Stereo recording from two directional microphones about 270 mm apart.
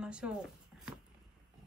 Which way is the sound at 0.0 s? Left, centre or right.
Centre.